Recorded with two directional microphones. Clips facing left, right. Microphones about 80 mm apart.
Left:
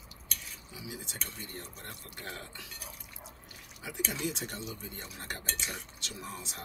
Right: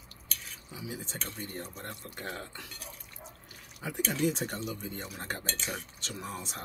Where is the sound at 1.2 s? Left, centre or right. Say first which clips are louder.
Right 4 dB; right.